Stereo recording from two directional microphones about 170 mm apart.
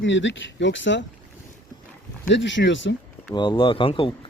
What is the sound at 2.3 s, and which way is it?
Speech, 90° left.